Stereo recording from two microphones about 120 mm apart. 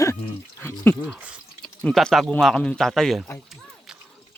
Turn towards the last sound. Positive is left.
turn(degrees=0)  # may be behind; listen again after turning